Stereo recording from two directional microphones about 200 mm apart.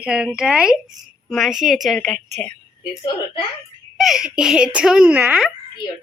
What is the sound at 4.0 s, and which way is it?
A woman's voice, centre (ahead or behind).